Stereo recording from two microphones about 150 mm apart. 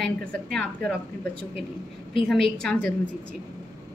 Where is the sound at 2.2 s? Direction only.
5° left (ahead or behind).